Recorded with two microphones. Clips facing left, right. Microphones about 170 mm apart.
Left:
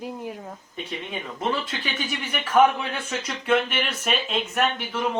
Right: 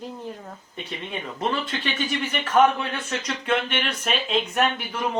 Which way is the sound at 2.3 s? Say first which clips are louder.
Left 1 dB; 10° left (ahead or behind).